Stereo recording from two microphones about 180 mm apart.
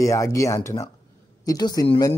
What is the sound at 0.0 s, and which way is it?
Speech, 15° left (ahead or behind).